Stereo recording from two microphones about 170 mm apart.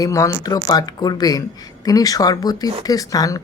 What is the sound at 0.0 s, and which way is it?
Speech, 20° left (ahead or behind).